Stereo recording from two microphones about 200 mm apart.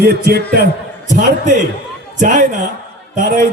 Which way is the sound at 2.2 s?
40° right (ahead or behind).